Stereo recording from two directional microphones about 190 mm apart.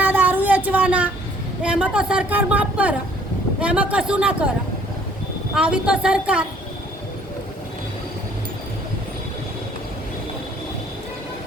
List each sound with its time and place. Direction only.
0.0 s a sound: 10° right (ahead or behind)
1.6 s speech: 5° right (ahead or behind)
5.5 s speech: 5° right (ahead or behind)